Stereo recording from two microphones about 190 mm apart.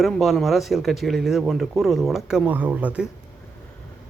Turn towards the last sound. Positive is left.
turn(degrees=-5)  # may be behind; listen again after turning